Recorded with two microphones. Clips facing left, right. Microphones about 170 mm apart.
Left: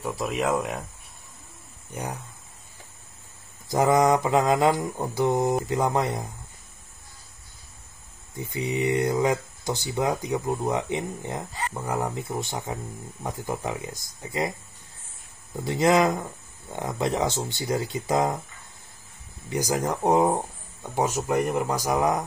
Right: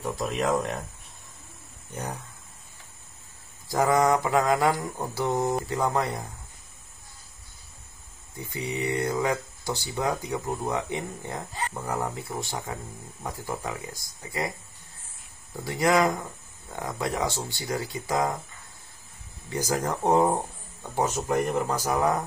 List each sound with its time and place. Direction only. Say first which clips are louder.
0.0 s speech: left 1 dB; 5° left (ahead or behind)
1.9 s speech: left 1 dB; 10° left (ahead or behind)
3.6 s speech: left 2 dB; 20° left (ahead or behind)
8.4 s speech: left 4 dB; 20° left (ahead or behind)
15.5 s speech: left 2 dB; 20° left (ahead or behind)
19.5 s speech: left 2 dB; 15° left (ahead or behind)